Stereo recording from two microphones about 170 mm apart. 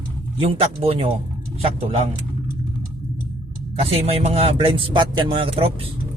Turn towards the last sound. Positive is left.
turn(degrees=-35)  # may be behind; listen again after turning